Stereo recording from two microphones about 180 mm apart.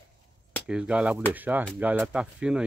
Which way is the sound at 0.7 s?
5° right (ahead or behind).